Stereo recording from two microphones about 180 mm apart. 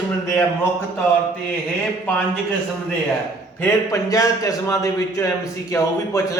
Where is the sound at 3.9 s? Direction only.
20° left (ahead or behind).